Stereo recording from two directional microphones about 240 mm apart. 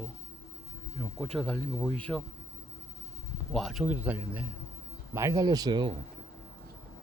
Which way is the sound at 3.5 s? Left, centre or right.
Centre.